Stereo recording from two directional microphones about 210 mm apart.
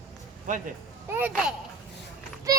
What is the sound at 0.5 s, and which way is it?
Speech, 35° right (ahead or behind).